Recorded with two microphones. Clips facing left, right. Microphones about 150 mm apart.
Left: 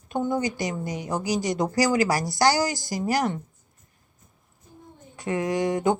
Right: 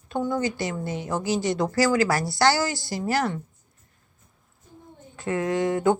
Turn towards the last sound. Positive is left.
turn(degrees=15)  # may be behind; listen again after turning